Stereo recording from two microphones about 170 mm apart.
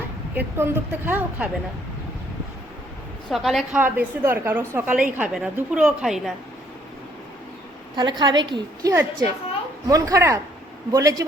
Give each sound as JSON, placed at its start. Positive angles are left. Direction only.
{"t": 0.3, "sound": "a woman's voice", "side_deg": -15}
{"t": 3.2, "sound": "a woman's voice", "side_deg": 0}
{"t": 3.8, "sound": "a woman's voice", "side_deg": -10}
{"t": 8.2, "sound": "a woman's voice", "side_deg": -25}